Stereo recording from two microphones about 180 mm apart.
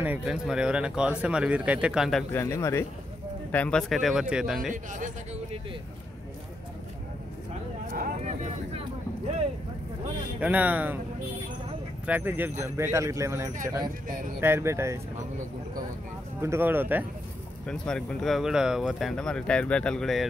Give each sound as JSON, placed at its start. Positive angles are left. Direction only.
{"t": 0.0, "sound": "speech", "side_deg": -5}
{"t": 2.3, "sound": "speech", "side_deg": 15}
{"t": 4.9, "sound": "speech", "side_deg": -40}
{"t": 7.9, "sound": "speech", "side_deg": -55}
{"t": 10.4, "sound": "speech", "side_deg": -10}
{"t": 12.1, "sound": "speech", "side_deg": -10}
{"t": 16.3, "sound": "speech", "side_deg": -15}
{"t": 17.6, "sound": "speech", "side_deg": 5}